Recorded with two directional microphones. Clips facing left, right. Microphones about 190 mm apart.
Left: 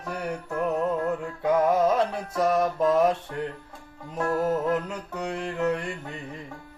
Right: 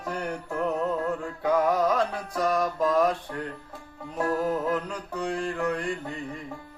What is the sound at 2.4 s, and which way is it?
Mantra, 25° left (ahead or behind).